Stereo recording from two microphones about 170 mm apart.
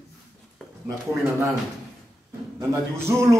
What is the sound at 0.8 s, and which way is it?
Speech, 15° right (ahead or behind).